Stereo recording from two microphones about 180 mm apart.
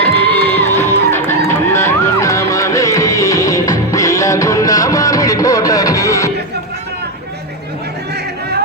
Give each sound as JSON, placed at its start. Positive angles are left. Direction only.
{"t": 0.3, "sound": "music", "side_deg": 10}